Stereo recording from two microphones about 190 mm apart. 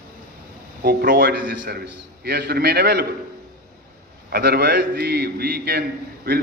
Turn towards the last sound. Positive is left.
turn(degrees=-55)  # may be behind; listen again after turning